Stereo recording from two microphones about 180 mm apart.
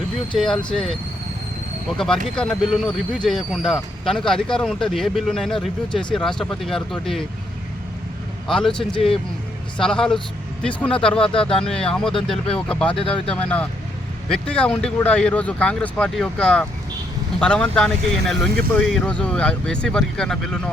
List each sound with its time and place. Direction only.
0.3 s speech: 5° left (ahead or behind)
2.0 s speech: 5° left (ahead or behind)
8.4 s speech: centre (ahead or behind)
11.2 s speech: 30° left (ahead or behind)
11.6 s speech: 5° left (ahead or behind)
12.9 s speech: 30° left (ahead or behind)
13.2 s speech: 5° left (ahead or behind)